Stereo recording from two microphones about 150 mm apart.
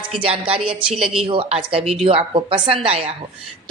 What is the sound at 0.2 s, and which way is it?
Speech, 40° right (ahead or behind).